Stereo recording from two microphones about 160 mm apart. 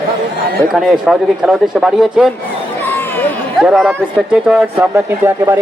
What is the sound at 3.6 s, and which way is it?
Speech, 5° right (ahead or behind).